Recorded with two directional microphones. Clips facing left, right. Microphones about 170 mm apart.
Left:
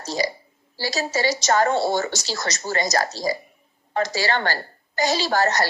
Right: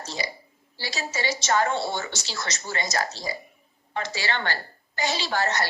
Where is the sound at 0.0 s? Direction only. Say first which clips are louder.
Left 8 dB; 40° left (ahead or behind).